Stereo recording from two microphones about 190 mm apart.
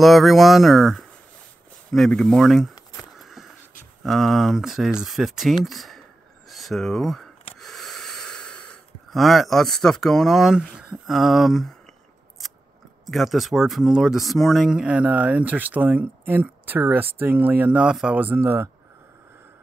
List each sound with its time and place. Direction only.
0.0 s speech: centre (ahead or behind)
2.7 s a sound: 20° left (ahead or behind)
3.2 s a sound: centre (ahead or behind)
4.0 s speech: centre (ahead or behind)
7.6 s snort: centre (ahead or behind)
13.0 s speech: centre (ahead or behind)